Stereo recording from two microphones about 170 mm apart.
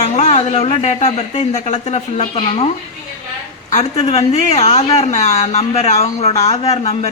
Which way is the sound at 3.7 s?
40° left (ahead or behind).